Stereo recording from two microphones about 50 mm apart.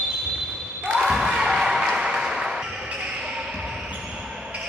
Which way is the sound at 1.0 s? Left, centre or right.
Centre.